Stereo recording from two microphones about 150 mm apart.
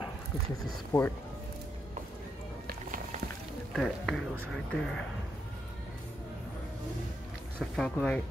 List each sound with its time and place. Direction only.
0.9 s speech: 20° left (ahead or behind)
3.7 s speech: 5° left (ahead or behind)
7.7 s speech: 5° left (ahead or behind)